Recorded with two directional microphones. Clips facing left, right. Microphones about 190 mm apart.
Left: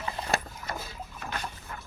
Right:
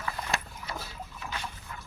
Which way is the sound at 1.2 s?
50° left (ahead or behind).